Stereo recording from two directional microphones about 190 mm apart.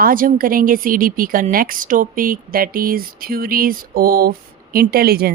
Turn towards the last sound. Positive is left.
turn(degrees=-55)  # may be behind; listen again after turning